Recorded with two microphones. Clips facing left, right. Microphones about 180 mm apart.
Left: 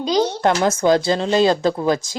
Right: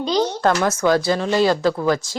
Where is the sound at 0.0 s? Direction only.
15° left (ahead or behind).